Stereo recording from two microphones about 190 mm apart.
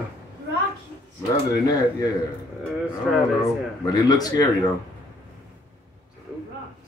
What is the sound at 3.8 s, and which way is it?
Speech, 20° left (ahead or behind).